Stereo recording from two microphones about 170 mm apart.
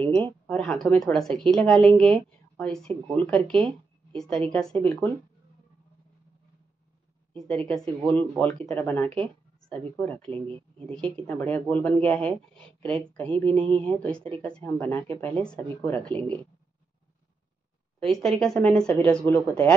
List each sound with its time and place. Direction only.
0.5 s a woman's voice: 5° left (ahead or behind)
7.3 s a woman's voice: 5° left (ahead or behind)
10.2 s speech: 35° right (ahead or behind)
10.9 s speech: 10° left (ahead or behind)
17.9 s speech: 5° left (ahead or behind)